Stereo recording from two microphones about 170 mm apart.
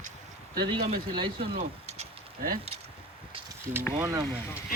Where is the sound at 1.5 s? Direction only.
40° right (ahead or behind).